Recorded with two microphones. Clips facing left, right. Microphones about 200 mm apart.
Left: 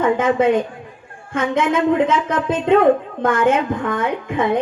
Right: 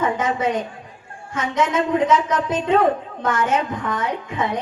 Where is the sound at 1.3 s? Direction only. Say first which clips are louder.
Left 3 dB; 55° left (ahead or behind).